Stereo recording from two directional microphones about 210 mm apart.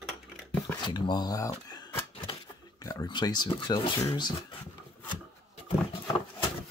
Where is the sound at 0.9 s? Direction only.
20° left (ahead or behind).